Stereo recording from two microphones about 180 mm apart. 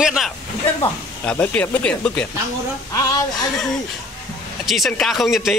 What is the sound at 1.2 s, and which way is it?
Speech, 10° left (ahead or behind).